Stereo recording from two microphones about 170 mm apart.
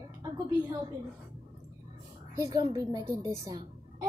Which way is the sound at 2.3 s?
20° right (ahead or behind).